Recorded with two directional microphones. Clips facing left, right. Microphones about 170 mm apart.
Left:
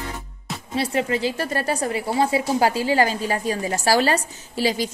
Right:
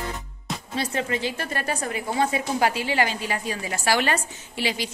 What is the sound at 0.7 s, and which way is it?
A woman's voice, 30° left (ahead or behind).